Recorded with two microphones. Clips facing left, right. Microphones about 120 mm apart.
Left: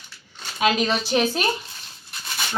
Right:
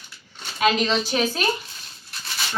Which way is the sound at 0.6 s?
10° left (ahead or behind).